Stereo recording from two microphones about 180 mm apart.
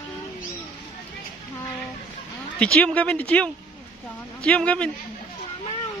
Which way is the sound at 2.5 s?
5° left (ahead or behind).